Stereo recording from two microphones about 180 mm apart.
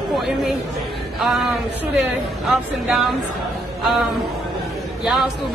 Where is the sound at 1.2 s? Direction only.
Centre (ahead or behind).